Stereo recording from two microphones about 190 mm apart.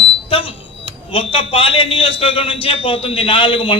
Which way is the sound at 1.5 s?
30° left (ahead or behind).